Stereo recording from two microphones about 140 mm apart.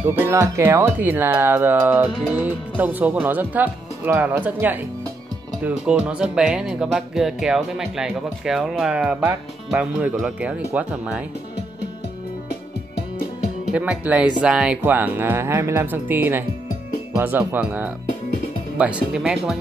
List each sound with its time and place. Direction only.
0.0 s speech: 15° right (ahead or behind)
13.7 s speech: 10° right (ahead or behind)